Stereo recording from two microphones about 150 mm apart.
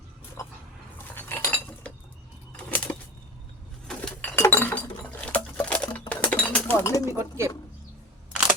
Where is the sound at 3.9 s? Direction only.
10° left (ahead or behind).